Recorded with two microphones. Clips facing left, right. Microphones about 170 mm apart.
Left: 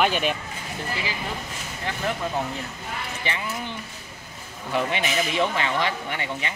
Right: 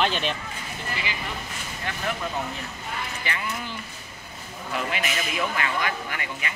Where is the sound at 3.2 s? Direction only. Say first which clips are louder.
Left 4 dB; 25° left (ahead or behind).